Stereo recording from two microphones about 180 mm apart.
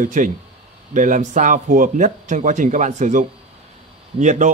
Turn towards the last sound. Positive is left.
turn(degrees=-45)  # may be behind; listen again after turning